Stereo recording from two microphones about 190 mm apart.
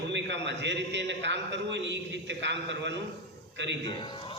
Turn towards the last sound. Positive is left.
turn(degrees=25)  # may be behind; listen again after turning